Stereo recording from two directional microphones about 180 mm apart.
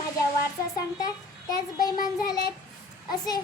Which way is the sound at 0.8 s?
20° left (ahead or behind).